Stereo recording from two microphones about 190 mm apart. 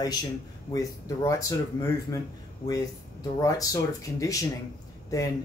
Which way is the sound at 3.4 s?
20° left (ahead or behind).